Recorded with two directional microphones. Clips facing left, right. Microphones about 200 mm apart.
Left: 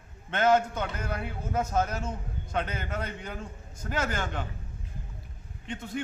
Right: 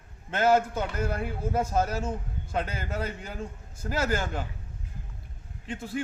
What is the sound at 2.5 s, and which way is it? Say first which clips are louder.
A man's voice: right 1 dB; 5° right (ahead or behind).